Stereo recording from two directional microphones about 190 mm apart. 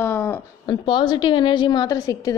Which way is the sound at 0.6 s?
25° left (ahead or behind).